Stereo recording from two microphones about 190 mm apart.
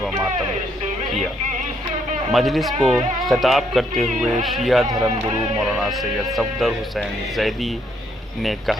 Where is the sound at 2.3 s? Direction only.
Centre (ahead or behind).